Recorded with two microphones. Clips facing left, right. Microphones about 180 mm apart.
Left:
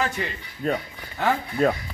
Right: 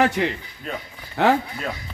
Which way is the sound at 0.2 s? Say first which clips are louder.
Right 7 dB; 75° right (ahead or behind).